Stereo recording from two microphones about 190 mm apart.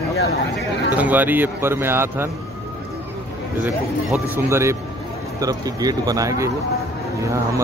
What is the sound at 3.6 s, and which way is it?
Speech, 15° right (ahead or behind).